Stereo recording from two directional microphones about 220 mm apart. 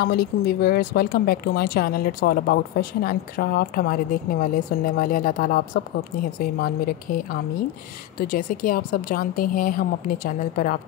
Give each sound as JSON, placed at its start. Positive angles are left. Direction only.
{"t": 0.0, "sound": "speech", "side_deg": 45}
{"t": 8.2, "sound": "speech", "side_deg": 40}